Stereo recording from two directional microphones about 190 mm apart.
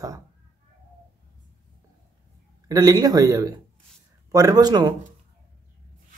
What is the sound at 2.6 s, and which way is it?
Speech, 20° right (ahead or behind).